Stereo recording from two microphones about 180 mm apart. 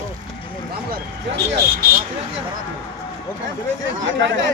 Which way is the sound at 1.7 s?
55° right (ahead or behind).